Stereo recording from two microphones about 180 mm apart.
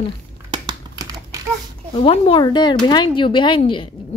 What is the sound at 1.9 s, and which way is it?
Speech, 30° left (ahead or behind).